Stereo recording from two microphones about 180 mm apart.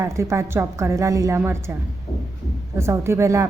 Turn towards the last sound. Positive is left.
turn(degrees=-15)  # may be behind; listen again after turning